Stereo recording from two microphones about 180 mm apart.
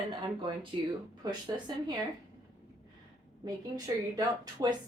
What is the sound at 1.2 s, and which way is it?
Speech, 20° right (ahead or behind).